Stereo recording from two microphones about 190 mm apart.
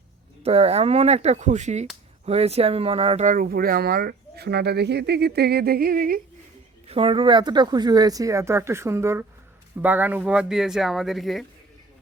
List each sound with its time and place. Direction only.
0.4 s speech: 30° right (ahead or behind)
3.3 s speech: 50° right (ahead or behind)
6.8 s speech: 30° right (ahead or behind); by 11.4 s centre (ahead or behind)